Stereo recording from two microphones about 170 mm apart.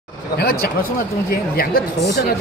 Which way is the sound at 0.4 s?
65° left (ahead or behind).